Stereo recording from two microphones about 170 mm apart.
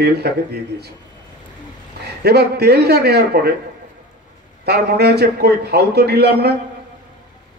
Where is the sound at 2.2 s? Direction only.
70° right (ahead or behind).